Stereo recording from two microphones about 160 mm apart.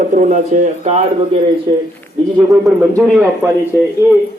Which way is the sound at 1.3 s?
30° right (ahead or behind).